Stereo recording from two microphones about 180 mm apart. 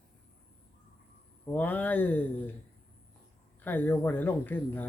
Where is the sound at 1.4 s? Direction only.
10° left (ahead or behind).